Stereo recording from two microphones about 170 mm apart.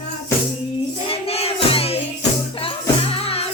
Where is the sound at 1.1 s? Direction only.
35° left (ahead or behind).